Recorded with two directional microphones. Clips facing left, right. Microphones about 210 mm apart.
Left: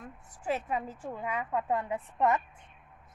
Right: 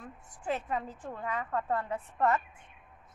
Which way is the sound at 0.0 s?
5° left (ahead or behind).